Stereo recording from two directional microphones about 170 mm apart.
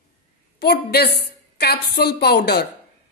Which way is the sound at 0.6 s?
70° left (ahead or behind).